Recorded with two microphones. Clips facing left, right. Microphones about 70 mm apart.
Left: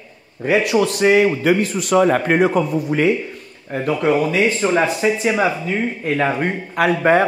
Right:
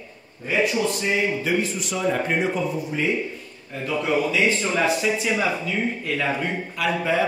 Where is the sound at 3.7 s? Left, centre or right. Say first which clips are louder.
Left 6 dB; left.